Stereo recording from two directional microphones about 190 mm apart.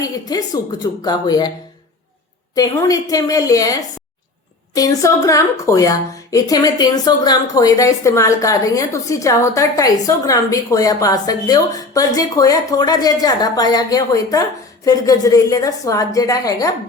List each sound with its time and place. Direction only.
0.0 s a woman's voice: 20° left (ahead or behind)
2.6 s a woman's voice: 20° left (ahead or behind)